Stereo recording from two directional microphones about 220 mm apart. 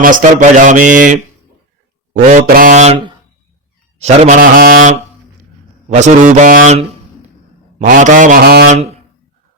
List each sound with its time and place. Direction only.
0.0 s speech: 35° right (ahead or behind)
2.2 s speech: 40° right (ahead or behind)